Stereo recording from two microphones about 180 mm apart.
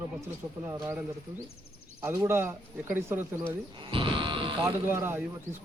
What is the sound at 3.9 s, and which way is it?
Sheep, 30° right (ahead or behind).